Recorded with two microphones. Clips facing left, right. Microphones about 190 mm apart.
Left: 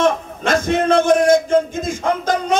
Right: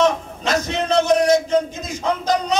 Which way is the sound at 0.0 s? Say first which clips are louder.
Left 1 dB; 50° left (ahead or behind).